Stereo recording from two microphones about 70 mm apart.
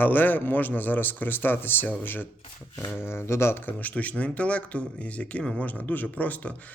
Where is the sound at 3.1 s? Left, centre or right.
Left; by 5.4 s centre.